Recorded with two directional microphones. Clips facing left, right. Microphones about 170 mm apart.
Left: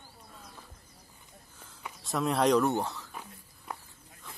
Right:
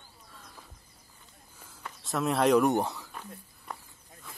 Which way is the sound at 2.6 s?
15° right (ahead or behind).